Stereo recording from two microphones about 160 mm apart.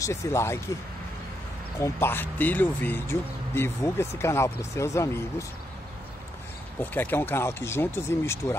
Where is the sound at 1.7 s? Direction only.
15° left (ahead or behind).